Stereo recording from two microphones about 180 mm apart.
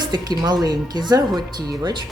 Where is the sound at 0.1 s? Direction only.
25° right (ahead or behind).